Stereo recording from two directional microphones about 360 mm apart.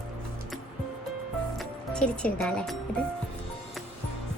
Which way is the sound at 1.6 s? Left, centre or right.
Centre.